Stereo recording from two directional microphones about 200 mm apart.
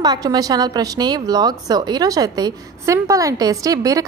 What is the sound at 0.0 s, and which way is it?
A woman's voice, 20° right (ahead or behind).